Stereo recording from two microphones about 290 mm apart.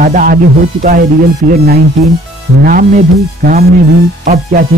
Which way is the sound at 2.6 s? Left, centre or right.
Right.